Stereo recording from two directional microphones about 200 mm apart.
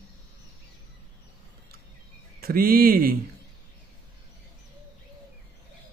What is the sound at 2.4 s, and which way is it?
Speech, 45° right (ahead or behind).